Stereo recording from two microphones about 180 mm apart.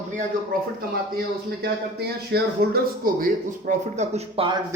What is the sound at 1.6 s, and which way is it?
Speech, 60° right (ahead or behind).